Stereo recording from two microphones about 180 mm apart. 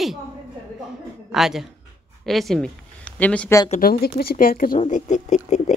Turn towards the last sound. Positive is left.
turn(degrees=40)  # may be behind; listen again after turning